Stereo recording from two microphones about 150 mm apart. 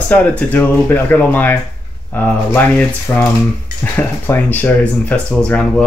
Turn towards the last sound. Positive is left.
turn(degrees=5)  # may be behind; listen again after turning